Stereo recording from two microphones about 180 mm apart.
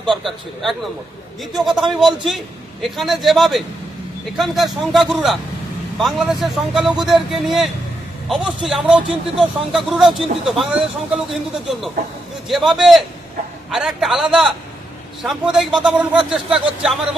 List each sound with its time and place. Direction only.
0.0 s speech: centre (ahead or behind)
12.5 s speech: centre (ahead or behind)